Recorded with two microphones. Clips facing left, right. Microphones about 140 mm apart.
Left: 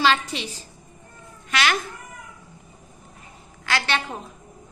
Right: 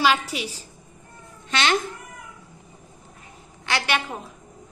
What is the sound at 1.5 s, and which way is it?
Speech, 25° right (ahead or behind).